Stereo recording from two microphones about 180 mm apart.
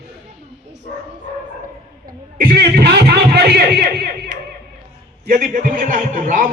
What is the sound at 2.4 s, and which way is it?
A man's voice, 55° right (ahead or behind).